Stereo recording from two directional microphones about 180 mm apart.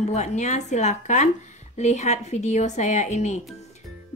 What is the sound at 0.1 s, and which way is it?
A woman's voice, 40° left (ahead or behind).